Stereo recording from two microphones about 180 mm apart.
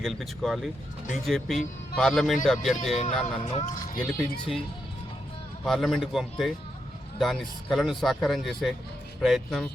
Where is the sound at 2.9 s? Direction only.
35° left (ahead or behind).